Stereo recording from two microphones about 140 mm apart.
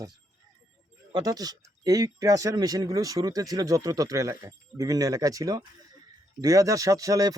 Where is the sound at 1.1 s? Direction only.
25° right (ahead or behind).